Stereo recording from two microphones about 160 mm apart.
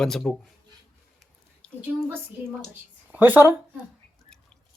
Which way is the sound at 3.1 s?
10° right (ahead or behind).